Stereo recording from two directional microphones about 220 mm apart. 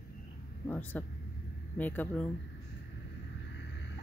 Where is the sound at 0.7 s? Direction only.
10° left (ahead or behind).